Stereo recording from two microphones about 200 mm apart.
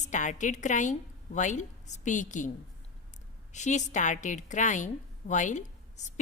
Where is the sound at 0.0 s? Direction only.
35° left (ahead or behind).